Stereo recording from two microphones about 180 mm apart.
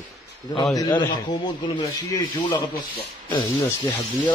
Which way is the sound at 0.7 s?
25° left (ahead or behind).